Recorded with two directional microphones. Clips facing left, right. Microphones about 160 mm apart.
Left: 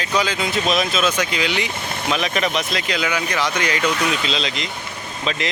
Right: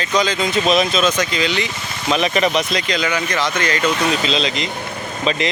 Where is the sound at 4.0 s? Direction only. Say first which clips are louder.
Right 3 dB; 40° right (ahead or behind).